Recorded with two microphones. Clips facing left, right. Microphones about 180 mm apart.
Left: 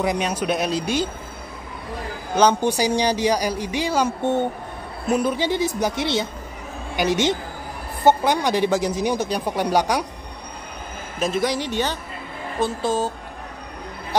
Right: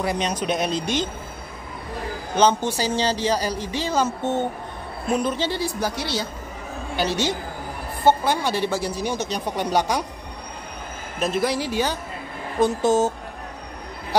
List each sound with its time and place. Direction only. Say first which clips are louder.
0.0 s a man's voice: left 2 dB; 15° left (ahead or behind)
2.3 s a man's voice: left 2 dB; 10° left (ahead or behind)
11.1 s a man's voice: even; centre (ahead or behind)
12.5 s a woman's voice: right 4 dB; 20° right (ahead or behind)